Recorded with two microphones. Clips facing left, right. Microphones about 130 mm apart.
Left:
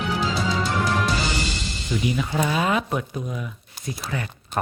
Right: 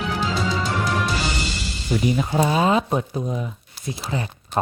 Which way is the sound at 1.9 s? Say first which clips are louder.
Right 4 dB; 40° right (ahead or behind).